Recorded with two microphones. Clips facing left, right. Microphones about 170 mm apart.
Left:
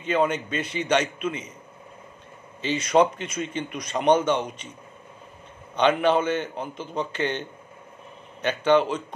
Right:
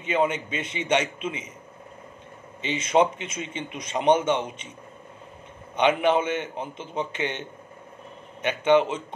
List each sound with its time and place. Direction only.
0.0 s a man's voice: 20° right (ahead or behind)
2.7 s a man's voice: 25° right (ahead or behind)
5.8 s a man's voice: 15° right (ahead or behind)